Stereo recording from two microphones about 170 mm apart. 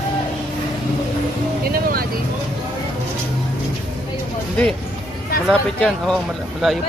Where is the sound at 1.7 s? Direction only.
60° right (ahead or behind).